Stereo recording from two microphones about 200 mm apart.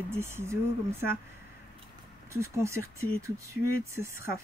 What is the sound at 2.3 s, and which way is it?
Speech, 15° right (ahead or behind).